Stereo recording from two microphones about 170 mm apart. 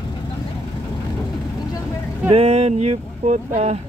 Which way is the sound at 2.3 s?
35° right (ahead or behind).